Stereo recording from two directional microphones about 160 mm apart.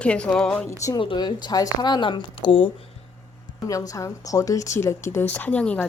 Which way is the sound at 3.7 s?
20° left (ahead or behind).